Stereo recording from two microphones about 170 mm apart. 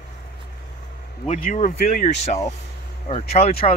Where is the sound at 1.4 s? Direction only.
45° left (ahead or behind).